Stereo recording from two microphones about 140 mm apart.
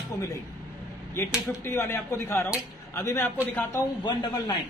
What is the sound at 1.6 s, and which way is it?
Speech, 20° left (ahead or behind).